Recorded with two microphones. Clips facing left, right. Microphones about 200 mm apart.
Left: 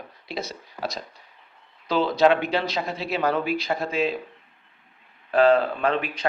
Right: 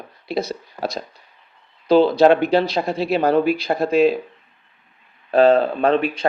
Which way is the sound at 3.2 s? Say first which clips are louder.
Right 6 dB; 35° right (ahead or behind).